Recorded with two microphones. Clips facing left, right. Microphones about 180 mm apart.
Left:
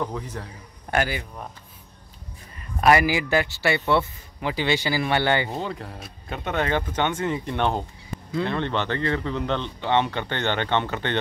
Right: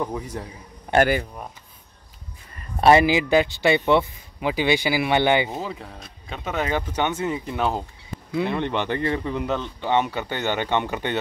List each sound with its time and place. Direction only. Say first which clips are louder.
0.0 s speech: right 2 dB; 15° right (ahead or behind)
0.9 s a sound: right 5 dB; 5° right (ahead or behind)
2.8 s speech: right 3 dB; 25° right (ahead or behind)
5.6 s speech: left 1 dB; centre (ahead or behind)